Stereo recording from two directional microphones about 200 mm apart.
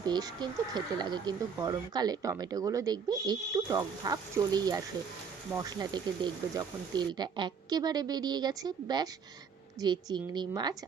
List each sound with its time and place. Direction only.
0.0 s speech: 20° right (ahead or behind)